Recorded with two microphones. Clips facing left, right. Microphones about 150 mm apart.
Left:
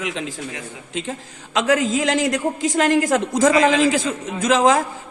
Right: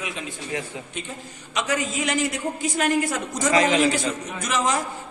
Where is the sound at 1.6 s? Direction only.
90° left.